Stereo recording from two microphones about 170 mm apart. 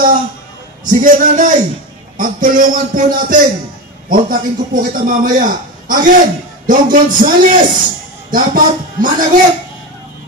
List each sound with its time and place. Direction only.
0.8 s a man's voice: 50° right (ahead or behind)